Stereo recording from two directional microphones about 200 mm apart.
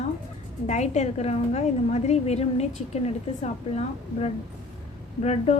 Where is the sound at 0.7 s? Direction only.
35° left (ahead or behind).